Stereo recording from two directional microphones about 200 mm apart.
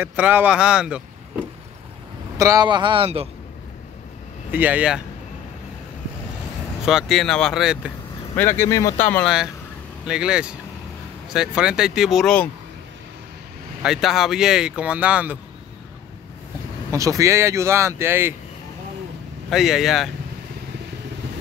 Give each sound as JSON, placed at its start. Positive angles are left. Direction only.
{"t": 0.0, "sound": "speech", "side_deg": -10}
{"t": 2.3, "sound": "a man's voice", "side_deg": -15}
{"t": 4.5, "sound": "speech", "side_deg": -10}
{"t": 6.9, "sound": "speech", "side_deg": 0}
{"t": 8.4, "sound": "speech", "side_deg": 10}
{"t": 10.0, "sound": "speech", "side_deg": -5}
{"t": 13.8, "sound": "speech", "side_deg": 0}
{"t": 16.9, "sound": "speech", "side_deg": -15}
{"t": 19.5, "sound": "speech", "side_deg": 0}